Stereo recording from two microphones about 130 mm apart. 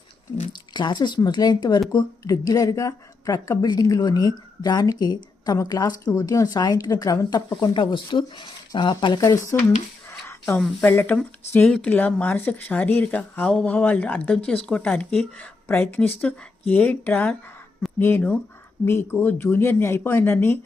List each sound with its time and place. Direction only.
0.7 s a woman's voice: 35° left (ahead or behind)
9.2 s speech: 25° left (ahead or behind)